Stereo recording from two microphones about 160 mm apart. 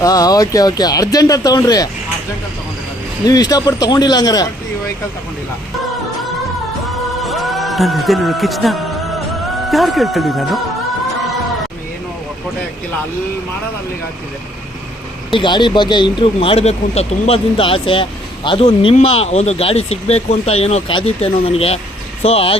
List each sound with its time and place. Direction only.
0.0 s speech: 25° left (ahead or behind)
3.2 s speech: 25° left (ahead or behind)
7.2 s speech: centre (ahead or behind)
15.3 s speech: 30° left (ahead or behind)